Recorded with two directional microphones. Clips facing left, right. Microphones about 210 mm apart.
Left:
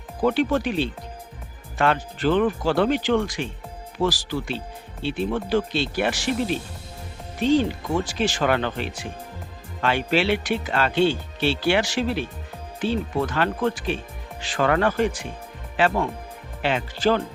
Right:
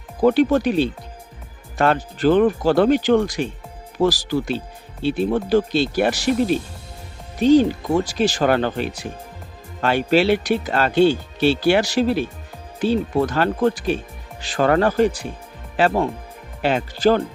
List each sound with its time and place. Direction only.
0.2 s speech: 40° right (ahead or behind)
16.6 s speech: 40° right (ahead or behind)